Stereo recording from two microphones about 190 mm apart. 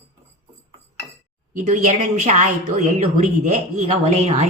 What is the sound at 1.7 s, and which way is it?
Speech, 35° right (ahead or behind).